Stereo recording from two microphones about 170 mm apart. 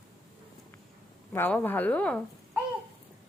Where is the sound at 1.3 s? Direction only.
10° left (ahead or behind).